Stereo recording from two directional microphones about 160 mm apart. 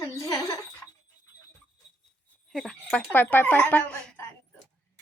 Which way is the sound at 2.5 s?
5° left (ahead or behind).